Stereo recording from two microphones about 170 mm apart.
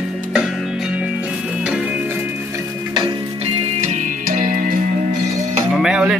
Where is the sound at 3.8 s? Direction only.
45° right (ahead or behind).